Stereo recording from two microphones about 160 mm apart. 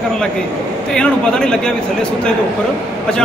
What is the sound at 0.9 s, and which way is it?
Speech, 5° left (ahead or behind).